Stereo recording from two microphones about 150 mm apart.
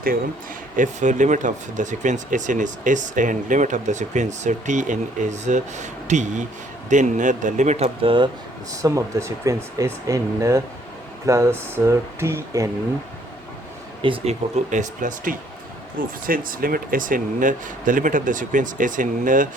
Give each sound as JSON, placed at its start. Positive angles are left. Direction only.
{"t": 0.8, "sound": "speech", "side_deg": -55}
{"t": 8.0, "sound": "speech", "side_deg": -35}
{"t": 8.7, "sound": "speech", "side_deg": -20}
{"t": 14.0, "sound": "speech", "side_deg": -40}